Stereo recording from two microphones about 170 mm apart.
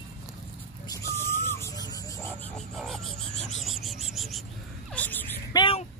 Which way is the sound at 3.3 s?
40° left (ahead or behind).